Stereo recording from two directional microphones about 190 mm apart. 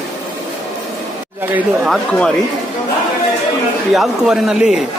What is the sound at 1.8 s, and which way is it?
Speech, 5° left (ahead or behind).